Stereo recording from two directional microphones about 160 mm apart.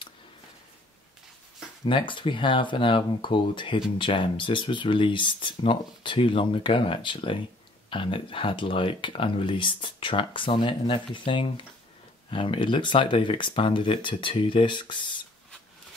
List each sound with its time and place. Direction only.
1.9 s speech: 30° left (ahead or behind)